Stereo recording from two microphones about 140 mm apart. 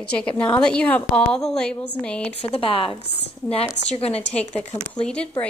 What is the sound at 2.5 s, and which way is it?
Speech, 40° left (ahead or behind).